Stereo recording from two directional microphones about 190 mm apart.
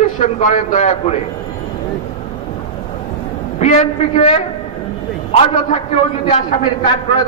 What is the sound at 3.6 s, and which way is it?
A man's voice, 35° left (ahead or behind).